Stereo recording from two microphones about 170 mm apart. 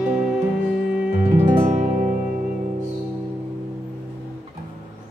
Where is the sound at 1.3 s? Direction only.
45° right (ahead or behind).